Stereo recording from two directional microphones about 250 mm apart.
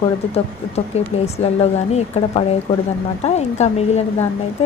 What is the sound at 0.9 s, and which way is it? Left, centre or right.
A woman's voice, left.